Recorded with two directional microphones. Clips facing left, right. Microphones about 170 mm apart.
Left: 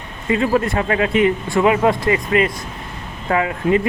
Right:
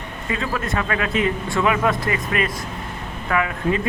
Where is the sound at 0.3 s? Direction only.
30° left (ahead or behind).